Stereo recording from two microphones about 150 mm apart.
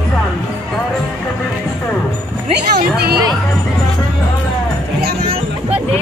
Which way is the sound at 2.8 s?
90° right.